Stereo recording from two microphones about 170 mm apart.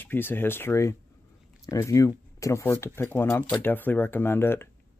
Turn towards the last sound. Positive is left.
turn(degrees=15)  # may be behind; listen again after turning